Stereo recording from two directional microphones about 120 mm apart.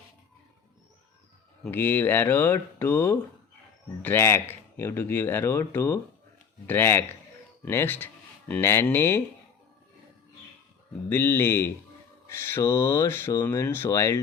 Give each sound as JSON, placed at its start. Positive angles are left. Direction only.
{"t": 1.7, "sound": "speech", "side_deg": 15}
{"t": 11.1, "sound": "speech", "side_deg": 15}